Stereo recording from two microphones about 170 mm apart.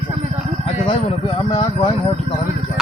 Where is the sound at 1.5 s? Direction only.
30° left (ahead or behind).